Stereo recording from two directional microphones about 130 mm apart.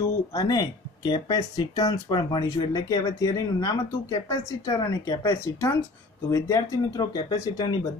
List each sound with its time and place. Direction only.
0.0 s speech: 25° left (ahead or behind)